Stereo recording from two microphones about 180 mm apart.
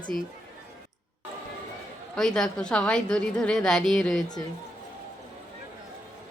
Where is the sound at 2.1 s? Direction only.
5° left (ahead or behind).